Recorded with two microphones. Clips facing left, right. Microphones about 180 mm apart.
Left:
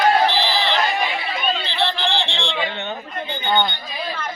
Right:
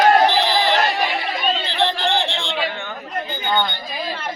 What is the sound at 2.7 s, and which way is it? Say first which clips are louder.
Chatter: left 1 dB; 20° left (ahead or behind).